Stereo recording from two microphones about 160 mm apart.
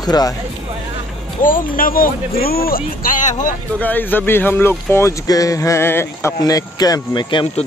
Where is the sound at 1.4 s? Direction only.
60° left (ahead or behind).